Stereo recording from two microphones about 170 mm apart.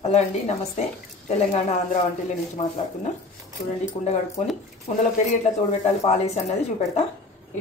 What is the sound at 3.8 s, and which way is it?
Speech, 40° left (ahead or behind).